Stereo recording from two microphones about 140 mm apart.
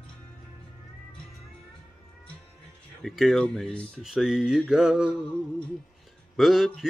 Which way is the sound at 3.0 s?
Centre (ahead or behind).